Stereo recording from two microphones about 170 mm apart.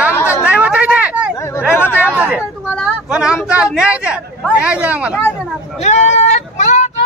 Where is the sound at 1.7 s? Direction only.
15° left (ahead or behind).